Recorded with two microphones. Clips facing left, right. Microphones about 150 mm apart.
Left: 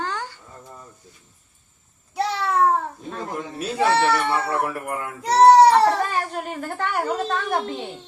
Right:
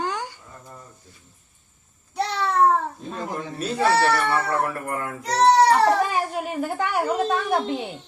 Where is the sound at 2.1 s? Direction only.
Centre (ahead or behind).